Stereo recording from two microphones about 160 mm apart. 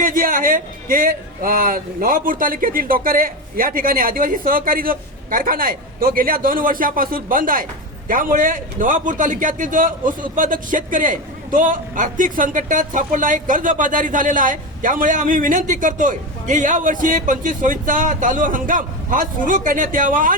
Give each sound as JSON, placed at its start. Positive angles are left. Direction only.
{"t": 0.0, "sound": "a man's voice", "side_deg": -60}